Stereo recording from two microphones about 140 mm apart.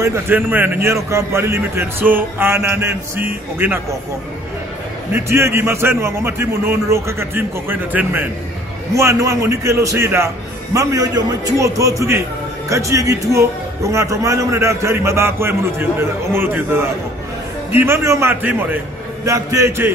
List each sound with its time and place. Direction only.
0.0 s a man's voice: 20° right (ahead or behind)
5.1 s a man's voice: 15° right (ahead or behind)